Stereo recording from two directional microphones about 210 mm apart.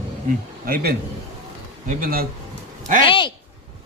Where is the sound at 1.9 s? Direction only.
40° right (ahead or behind).